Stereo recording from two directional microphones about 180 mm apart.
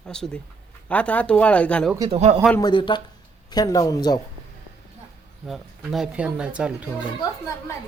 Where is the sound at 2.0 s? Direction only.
35° right (ahead or behind).